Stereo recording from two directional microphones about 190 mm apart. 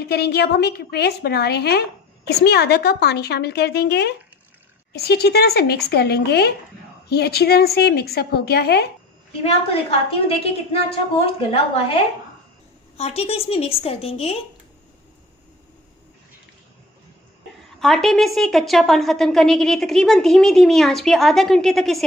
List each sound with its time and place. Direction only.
0.0 s a woman's voice: 55° left (ahead or behind)
9.4 s a woman's voice: 30° left (ahead or behind)
12.9 s a woman's voice: 30° left (ahead or behind)
17.7 s a woman's voice: centre (ahead or behind)